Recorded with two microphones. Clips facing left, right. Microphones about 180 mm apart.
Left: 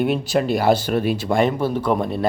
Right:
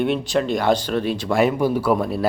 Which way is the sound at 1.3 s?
10° right (ahead or behind).